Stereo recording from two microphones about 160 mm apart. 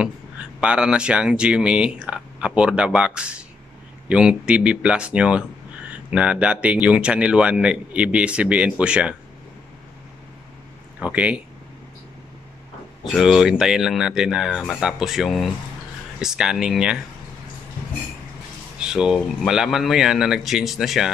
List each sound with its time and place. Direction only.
0.6 s speech: 5° right (ahead or behind)
11.0 s speech: 5° right (ahead or behind)
13.0 s speech: centre (ahead or behind)
18.8 s speech: 5° right (ahead or behind)